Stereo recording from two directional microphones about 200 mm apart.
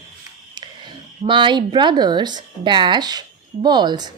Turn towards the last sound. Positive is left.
turn(degrees=-20)  # may be behind; listen again after turning